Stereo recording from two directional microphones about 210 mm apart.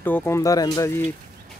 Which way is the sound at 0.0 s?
10° left (ahead or behind).